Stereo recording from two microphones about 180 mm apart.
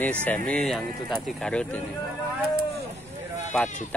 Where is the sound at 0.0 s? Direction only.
10° left (ahead or behind).